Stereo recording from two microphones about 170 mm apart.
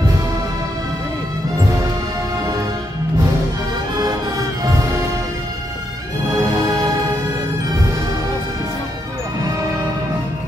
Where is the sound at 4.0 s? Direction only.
20° right (ahead or behind).